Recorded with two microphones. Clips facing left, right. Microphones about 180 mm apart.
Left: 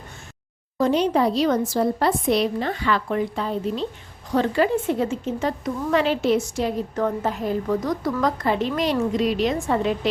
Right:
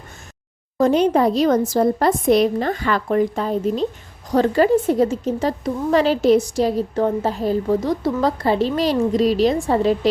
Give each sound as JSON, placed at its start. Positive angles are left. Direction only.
{"t": 0.8, "sound": "a woman's voice", "side_deg": -50}